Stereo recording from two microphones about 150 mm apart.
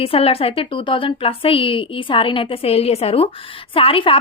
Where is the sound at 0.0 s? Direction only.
40° left (ahead or behind).